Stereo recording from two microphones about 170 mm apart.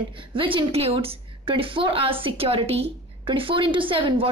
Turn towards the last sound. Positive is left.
turn(degrees=-30)  # may be behind; listen again after turning